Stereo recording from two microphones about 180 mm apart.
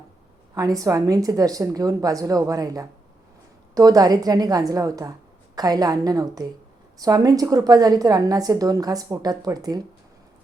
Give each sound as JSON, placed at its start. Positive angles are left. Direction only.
{"t": 0.5, "sound": "a woman's voice", "side_deg": -20}